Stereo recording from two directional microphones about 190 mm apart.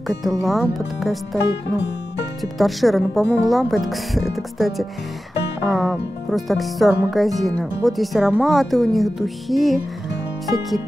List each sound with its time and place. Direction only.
0.5 s speech: centre (ahead or behind)
2.6 s speech: centre (ahead or behind)